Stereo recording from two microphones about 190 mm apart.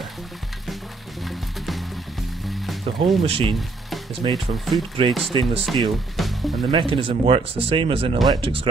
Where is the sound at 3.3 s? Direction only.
30° right (ahead or behind).